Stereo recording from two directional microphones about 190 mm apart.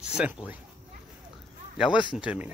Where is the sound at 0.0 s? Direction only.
5° right (ahead or behind).